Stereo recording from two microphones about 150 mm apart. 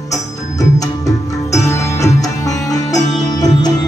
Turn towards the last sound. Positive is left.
turn(degrees=25)  # may be behind; listen again after turning